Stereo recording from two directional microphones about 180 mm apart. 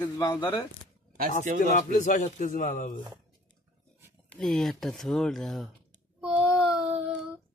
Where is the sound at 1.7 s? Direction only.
45° left (ahead or behind).